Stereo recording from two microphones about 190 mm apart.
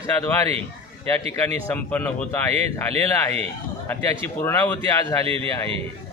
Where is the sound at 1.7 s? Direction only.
10° left (ahead or behind).